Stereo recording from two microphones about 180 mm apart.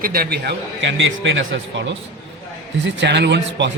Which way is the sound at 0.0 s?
55° right (ahead or behind).